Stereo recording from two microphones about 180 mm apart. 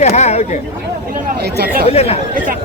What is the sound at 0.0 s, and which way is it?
Speech, 40° left (ahead or behind).